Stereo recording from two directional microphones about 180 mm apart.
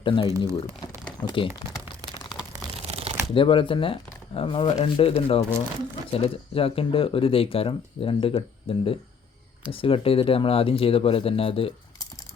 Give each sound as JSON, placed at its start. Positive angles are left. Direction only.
{"t": 0.0, "sound": "speech", "side_deg": 25}
{"t": 0.3, "sound": "speech", "side_deg": -15}
{"t": 1.2, "sound": "speech", "side_deg": 25}
{"t": 2.8, "sound": "shuffling cards", "side_deg": -35}
{"t": 3.3, "sound": "speech", "side_deg": 30}